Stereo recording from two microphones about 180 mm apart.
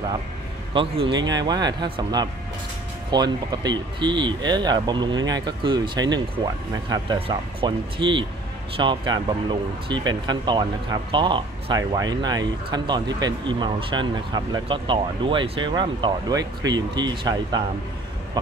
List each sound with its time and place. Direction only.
0.7 s speech: 30° right (ahead or behind)